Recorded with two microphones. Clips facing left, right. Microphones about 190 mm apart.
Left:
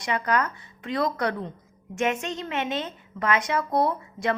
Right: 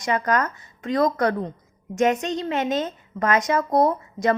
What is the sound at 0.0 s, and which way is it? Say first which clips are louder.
A woman's voice: right 3 dB; 45° right (ahead or behind).